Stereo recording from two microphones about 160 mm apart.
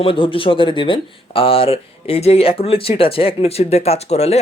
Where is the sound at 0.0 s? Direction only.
35° left (ahead or behind).